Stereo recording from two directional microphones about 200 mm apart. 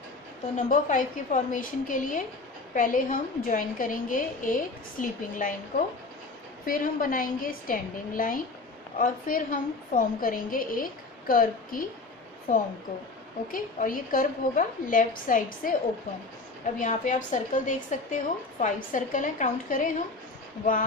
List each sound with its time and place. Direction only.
0.7 s a woman's voice: 40° left (ahead or behind)
13.5 s a woman's voice: 45° left (ahead or behind)
16.8 s a woman's voice: 40° left (ahead or behind)